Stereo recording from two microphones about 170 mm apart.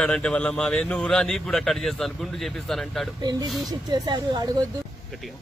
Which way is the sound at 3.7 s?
25° right (ahead or behind).